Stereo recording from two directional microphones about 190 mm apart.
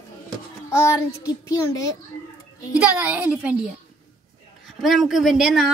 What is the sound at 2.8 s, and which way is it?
Speech, 10° right (ahead or behind).